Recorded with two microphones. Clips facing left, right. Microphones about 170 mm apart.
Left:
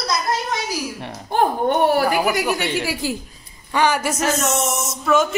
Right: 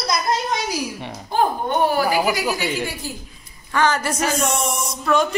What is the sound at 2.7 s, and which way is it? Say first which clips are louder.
Speech: left 4 dB; 90° left.